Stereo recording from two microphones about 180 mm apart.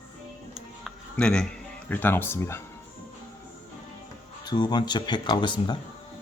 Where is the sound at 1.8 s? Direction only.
10° left (ahead or behind).